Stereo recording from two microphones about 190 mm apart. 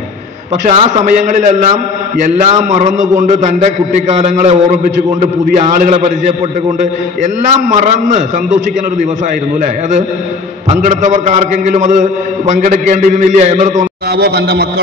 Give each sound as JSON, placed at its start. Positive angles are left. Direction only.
{"t": 0.7, "sound": "a man's voice", "side_deg": -40}
{"t": 7.5, "sound": "a man's voice", "side_deg": -40}
{"t": 14.1, "sound": "a man's voice", "side_deg": -55}